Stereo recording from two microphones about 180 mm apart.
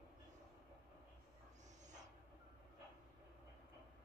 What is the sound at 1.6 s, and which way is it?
Owl, 40° right (ahead or behind).